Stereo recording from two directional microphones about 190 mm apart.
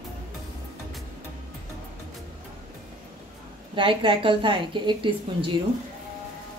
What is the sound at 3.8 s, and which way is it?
A woman's voice, 25° right (ahead or behind).